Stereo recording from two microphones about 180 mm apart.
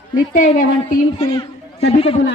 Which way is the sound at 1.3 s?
35° left (ahead or behind).